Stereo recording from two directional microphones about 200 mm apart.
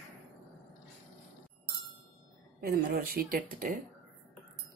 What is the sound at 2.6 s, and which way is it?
Speech, 50° right (ahead or behind).